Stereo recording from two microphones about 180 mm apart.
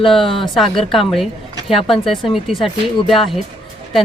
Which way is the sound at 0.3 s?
30° left (ahead or behind).